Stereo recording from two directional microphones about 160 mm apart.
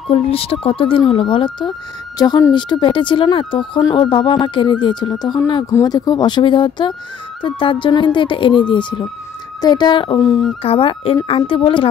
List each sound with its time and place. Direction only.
0.1 s speech: 35° left (ahead or behind)